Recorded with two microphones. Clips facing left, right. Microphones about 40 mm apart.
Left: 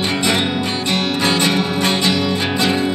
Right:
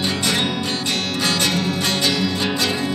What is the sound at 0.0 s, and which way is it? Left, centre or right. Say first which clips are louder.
Music: left 3 dB; left.